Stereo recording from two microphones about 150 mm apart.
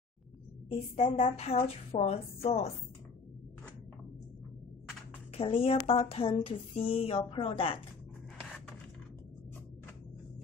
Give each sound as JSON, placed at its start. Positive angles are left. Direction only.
{"t": 0.7, "sound": "a woman's voice", "side_deg": 40}
{"t": 5.3, "sound": "a woman's voice", "side_deg": 40}